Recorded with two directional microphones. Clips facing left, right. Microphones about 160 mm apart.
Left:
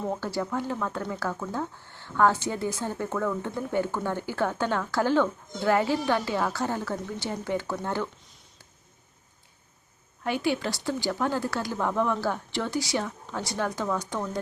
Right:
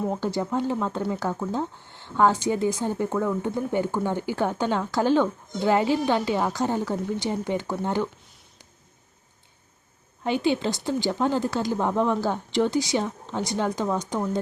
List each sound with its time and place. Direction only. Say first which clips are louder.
0.0 s speech: right 3 dB; 20° right (ahead or behind)
10.2 s speech: right 4 dB; 25° right (ahead or behind)